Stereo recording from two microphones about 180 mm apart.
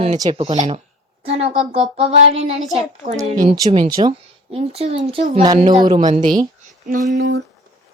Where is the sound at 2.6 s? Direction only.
Centre (ahead or behind).